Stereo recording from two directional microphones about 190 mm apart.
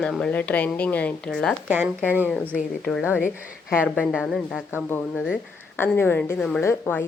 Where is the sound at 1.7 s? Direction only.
10° right (ahead or behind).